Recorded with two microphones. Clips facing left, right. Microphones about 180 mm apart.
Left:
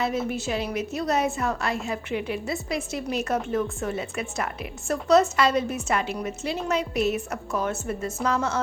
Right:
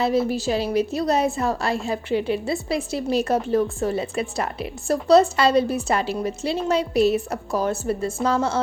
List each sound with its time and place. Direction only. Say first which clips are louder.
0.0 s a woman's voice: right 6 dB; 35° right (ahead or behind)